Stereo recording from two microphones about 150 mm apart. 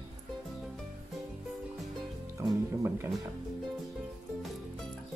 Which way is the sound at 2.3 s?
20° right (ahead or behind).